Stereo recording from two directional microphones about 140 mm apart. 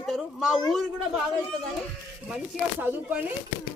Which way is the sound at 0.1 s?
5° right (ahead or behind).